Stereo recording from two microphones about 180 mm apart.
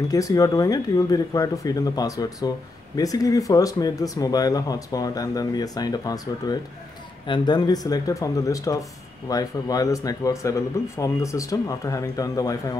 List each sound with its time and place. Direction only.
0.1 s speech: 20° left (ahead or behind)